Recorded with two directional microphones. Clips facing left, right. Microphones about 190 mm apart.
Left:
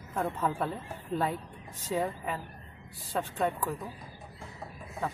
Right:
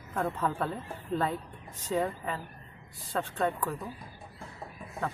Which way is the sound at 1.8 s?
10° left (ahead or behind).